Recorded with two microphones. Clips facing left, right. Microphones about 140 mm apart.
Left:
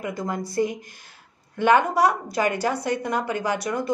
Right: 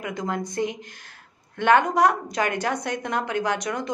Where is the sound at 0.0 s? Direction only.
5° left (ahead or behind).